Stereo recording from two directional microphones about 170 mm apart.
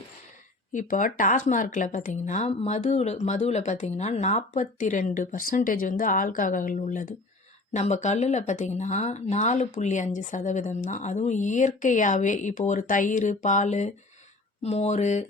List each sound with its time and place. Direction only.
0.7 s speech: 50° left (ahead or behind)